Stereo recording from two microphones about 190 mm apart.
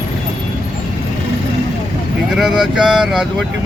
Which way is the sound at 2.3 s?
Centre (ahead or behind).